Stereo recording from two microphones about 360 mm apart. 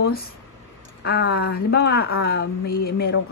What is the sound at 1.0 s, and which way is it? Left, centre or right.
Speech, left.